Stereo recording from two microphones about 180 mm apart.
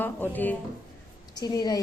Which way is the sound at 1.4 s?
20° left (ahead or behind).